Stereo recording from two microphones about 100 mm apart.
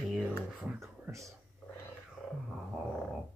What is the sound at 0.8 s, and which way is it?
Speech, 30° right (ahead or behind).